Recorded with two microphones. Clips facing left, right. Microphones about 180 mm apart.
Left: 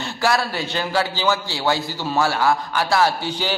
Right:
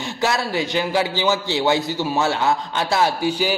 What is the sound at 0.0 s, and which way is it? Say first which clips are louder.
A man's voice: left 1 dB; 20° right (ahead or behind).